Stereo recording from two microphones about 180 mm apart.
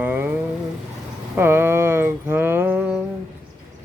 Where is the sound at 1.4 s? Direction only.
10° right (ahead or behind).